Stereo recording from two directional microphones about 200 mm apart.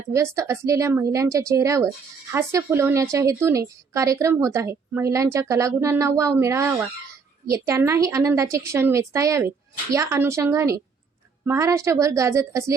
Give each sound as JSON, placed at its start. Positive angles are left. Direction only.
{"t": 0.1, "sound": "a woman's voice", "side_deg": -15}